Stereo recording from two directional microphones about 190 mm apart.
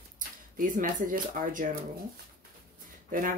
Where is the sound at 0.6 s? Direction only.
45° right (ahead or behind).